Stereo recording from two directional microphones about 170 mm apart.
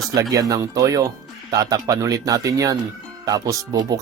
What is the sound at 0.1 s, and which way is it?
Speech, 20° right (ahead or behind).